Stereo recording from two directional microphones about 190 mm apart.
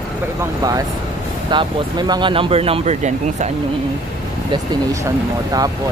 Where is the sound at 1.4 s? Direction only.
25° right (ahead or behind).